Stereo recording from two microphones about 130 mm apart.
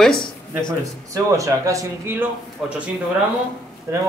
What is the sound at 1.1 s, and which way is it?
Speech, 25° right (ahead or behind).